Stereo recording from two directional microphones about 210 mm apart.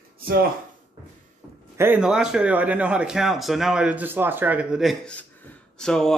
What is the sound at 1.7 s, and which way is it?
A man's voice, 10° right (ahead or behind).